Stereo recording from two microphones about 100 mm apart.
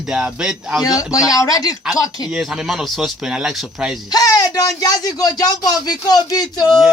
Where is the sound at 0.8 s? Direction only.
35° left (ahead or behind).